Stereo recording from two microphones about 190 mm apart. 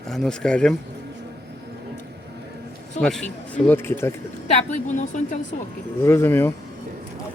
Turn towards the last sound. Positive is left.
turn(degrees=15)  # may be behind; listen again after turning